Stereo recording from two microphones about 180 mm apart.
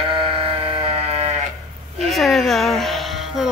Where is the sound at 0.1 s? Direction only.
30° right (ahead or behind).